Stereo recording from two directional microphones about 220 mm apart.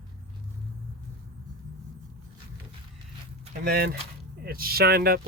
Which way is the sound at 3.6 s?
45° right (ahead or behind).